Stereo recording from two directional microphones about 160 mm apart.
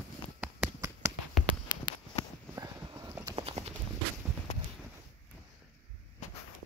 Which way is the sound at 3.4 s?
40° right (ahead or behind).